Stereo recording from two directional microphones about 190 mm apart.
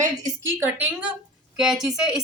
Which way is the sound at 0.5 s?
10° right (ahead or behind).